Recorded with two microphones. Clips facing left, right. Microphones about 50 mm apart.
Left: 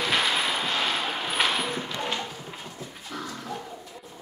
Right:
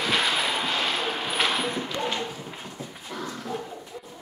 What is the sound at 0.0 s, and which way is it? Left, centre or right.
Train, centre.